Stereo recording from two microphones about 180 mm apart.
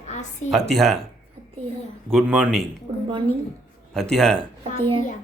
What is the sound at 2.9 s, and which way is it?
Speech, 25° right (ahead or behind).